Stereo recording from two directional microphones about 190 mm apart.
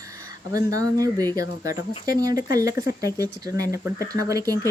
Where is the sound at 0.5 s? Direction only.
20° right (ahead or behind).